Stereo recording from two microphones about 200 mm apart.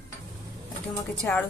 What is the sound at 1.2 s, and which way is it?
Speech, 5° left (ahead or behind).